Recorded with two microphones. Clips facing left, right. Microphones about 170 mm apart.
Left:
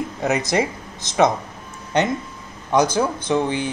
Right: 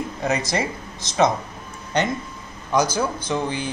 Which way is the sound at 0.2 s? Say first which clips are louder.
Left 3 dB; 20° left (ahead or behind).